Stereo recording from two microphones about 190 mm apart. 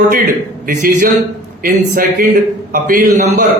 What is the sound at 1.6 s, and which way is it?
A man's voice, 50° right (ahead or behind).